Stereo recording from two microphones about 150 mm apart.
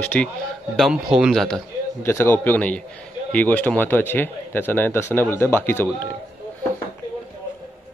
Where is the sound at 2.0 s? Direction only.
15° left (ahead or behind).